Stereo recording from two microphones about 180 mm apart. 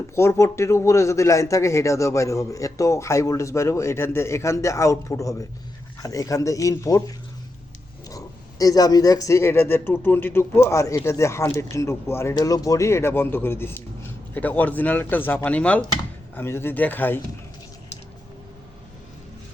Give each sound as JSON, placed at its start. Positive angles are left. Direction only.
{"t": 0.2, "sound": "speech", "side_deg": 15}
{"t": 8.0, "sound": "speech", "side_deg": 20}